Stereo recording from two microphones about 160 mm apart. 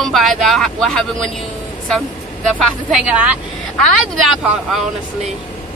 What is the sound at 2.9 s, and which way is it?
Speech, 5° right (ahead or behind).